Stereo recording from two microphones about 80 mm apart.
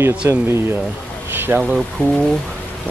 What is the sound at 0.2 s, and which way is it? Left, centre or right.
Speech, right.